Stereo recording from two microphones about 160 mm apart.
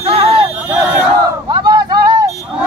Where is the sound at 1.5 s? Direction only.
25° right (ahead or behind).